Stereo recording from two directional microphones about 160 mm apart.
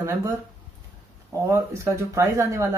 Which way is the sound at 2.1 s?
20° right (ahead or behind).